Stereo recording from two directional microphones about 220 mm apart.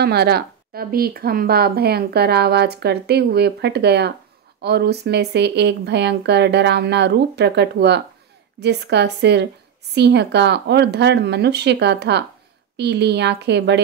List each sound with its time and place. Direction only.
0.0 s speech: 45° right (ahead or behind)